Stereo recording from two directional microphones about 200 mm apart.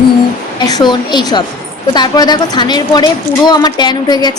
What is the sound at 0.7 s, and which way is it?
A woman's voice, 20° left (ahead or behind).